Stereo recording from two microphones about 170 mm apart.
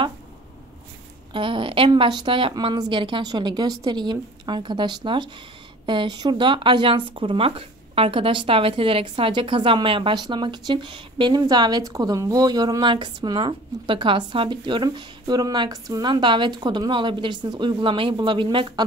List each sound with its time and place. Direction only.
1.3 s speech: 30° right (ahead or behind)